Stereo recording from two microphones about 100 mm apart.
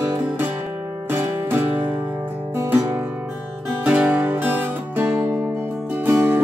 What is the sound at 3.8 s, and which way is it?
Music, 15° right (ahead or behind).